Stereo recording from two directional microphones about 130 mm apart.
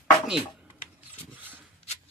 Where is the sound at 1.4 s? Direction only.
15° right (ahead or behind).